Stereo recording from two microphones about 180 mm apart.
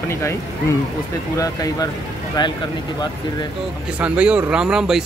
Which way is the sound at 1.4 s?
20° left (ahead or behind).